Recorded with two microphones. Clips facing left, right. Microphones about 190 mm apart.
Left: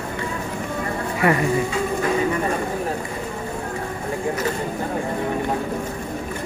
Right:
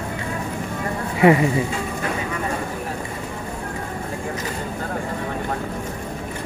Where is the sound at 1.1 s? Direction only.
20° right (ahead or behind).